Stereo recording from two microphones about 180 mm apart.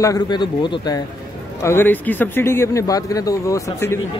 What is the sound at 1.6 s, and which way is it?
Speech, 15° left (ahead or behind).